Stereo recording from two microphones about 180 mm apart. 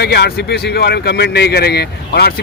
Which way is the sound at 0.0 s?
65° left (ahead or behind).